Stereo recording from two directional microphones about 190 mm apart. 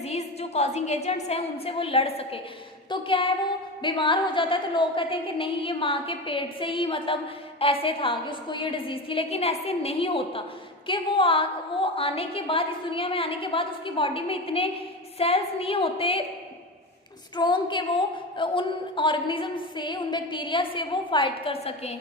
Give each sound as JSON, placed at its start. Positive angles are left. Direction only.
{"t": 0.0, "sound": "a woman's voice", "side_deg": 35}
{"t": 17.3, "sound": "a woman's voice", "side_deg": 25}